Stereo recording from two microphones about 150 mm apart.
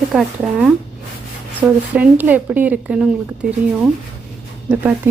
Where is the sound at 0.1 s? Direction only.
5° right (ahead or behind).